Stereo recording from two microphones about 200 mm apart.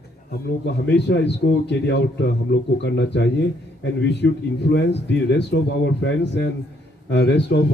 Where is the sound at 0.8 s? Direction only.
60° left (ahead or behind).